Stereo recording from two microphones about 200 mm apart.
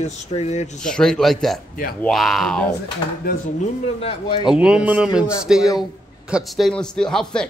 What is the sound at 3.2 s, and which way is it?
Speech, 45° left (ahead or behind).